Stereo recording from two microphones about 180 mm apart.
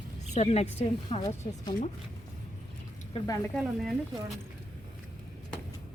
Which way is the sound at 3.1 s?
20° left (ahead or behind).